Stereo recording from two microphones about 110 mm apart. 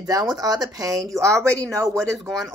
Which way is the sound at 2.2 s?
Centre (ahead or behind).